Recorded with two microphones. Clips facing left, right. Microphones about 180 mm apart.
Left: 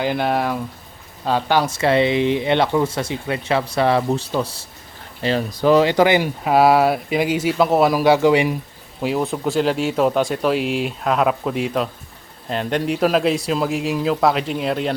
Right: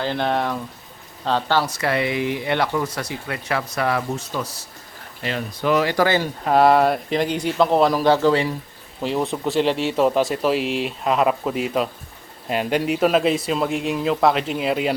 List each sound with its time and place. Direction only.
0.0 s speech: 10° left (ahead or behind)
1.6 s speech: 25° left (ahead or behind)
9.0 s speech: 5° left (ahead or behind)